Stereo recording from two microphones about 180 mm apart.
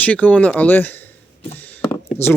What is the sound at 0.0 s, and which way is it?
Speech, 10° left (ahead or behind).